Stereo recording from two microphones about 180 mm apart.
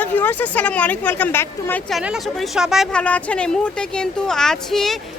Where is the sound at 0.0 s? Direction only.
10° left (ahead or behind).